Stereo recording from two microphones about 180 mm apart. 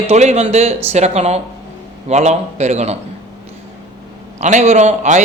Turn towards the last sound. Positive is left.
turn(degrees=-40)  # may be behind; listen again after turning